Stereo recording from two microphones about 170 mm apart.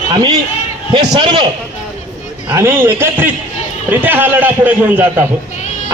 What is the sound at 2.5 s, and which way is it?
A man's voice, 15° right (ahead or behind).